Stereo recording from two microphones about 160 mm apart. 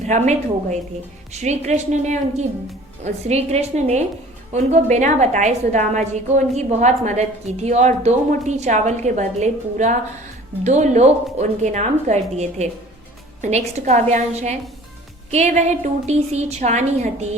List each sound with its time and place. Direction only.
0.0 s a woman's voice: 45° right (ahead or behind)